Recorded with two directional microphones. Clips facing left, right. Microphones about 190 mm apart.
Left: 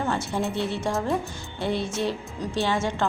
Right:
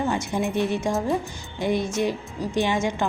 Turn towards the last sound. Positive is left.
turn(degrees=-15)  # may be behind; listen again after turning